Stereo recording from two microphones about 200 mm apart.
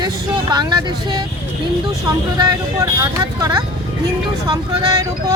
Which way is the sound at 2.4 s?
20° right (ahead or behind).